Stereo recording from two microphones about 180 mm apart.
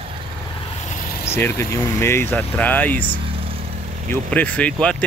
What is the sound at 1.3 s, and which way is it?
Speech, 15° left (ahead or behind).